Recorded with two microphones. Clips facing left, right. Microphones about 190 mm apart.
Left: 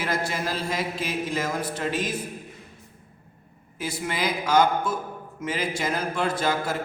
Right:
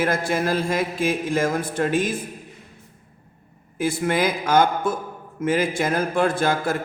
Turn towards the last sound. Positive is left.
turn(degrees=-50)  # may be behind; listen again after turning